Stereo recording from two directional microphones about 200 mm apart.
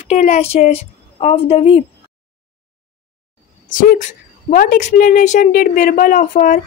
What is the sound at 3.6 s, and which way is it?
A woman's voice, 40° left (ahead or behind).